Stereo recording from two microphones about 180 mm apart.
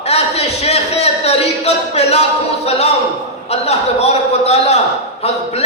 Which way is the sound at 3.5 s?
35° left (ahead or behind).